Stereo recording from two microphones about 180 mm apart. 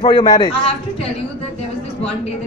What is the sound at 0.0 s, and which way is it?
Speech, 25° left (ahead or behind).